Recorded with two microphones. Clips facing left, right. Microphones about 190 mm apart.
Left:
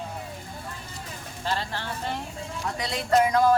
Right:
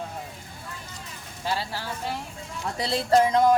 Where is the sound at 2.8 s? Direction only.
30° right (ahead or behind).